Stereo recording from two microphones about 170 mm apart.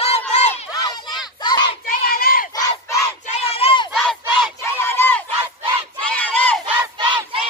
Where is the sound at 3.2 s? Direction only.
40° left (ahead or behind).